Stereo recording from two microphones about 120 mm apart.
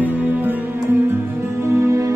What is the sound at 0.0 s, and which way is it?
Music, 15° right (ahead or behind).